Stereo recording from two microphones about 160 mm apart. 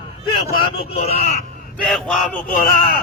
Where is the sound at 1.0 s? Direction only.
40° left (ahead or behind).